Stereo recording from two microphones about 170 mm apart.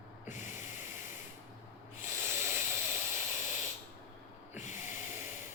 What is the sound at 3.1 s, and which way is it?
Hiss, 45° left (ahead or behind).